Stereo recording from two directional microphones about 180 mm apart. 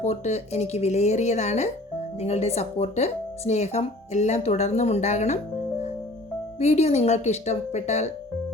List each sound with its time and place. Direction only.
0.0 s speech: 40° left (ahead or behind)
6.6 s speech: 35° left (ahead or behind)